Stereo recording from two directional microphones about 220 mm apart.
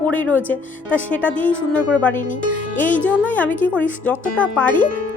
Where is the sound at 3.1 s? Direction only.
5° left (ahead or behind).